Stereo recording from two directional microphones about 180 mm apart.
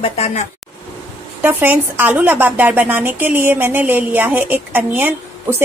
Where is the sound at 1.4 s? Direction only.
10° right (ahead or behind).